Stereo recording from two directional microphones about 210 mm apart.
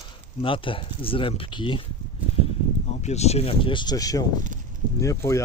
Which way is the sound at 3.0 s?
30° left (ahead or behind).